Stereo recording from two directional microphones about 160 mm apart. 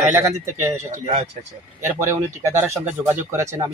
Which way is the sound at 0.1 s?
15° right (ahead or behind).